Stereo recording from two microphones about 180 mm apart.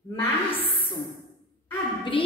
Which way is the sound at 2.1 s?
30° left (ahead or behind).